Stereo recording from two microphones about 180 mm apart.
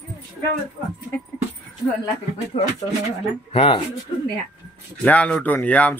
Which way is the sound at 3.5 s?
30° left (ahead or behind).